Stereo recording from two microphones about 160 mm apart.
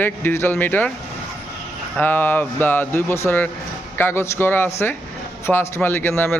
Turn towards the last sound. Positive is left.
turn(degrees=15)  # may be behind; listen again after turning